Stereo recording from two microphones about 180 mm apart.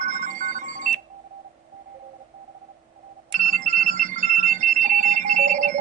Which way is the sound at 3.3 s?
45° right (ahead or behind).